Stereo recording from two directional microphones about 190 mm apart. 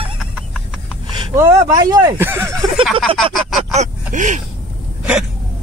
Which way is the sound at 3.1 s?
30° right (ahead or behind).